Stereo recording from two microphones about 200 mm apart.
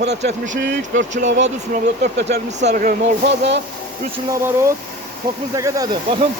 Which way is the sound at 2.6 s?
40° right (ahead or behind).